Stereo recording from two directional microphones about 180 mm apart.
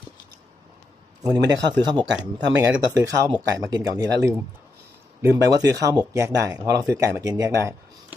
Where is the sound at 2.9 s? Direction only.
20° right (ahead or behind).